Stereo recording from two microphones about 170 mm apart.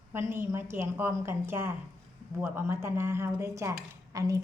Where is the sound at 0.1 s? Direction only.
15° right (ahead or behind).